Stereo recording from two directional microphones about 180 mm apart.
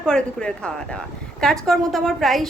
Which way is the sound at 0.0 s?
5° left (ahead or behind).